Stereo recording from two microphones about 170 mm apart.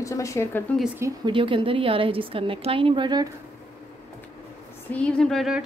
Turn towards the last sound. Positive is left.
turn(degrees=0)  # may be behind; listen again after turning